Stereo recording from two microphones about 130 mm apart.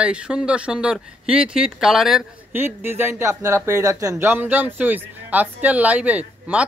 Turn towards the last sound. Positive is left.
turn(degrees=-10)  # may be behind; listen again after turning